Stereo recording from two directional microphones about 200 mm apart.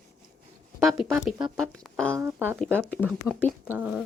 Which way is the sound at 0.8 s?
Centre (ahead or behind).